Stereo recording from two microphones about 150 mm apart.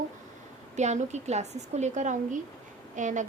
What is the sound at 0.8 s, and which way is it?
A woman's voice, 50° right (ahead or behind).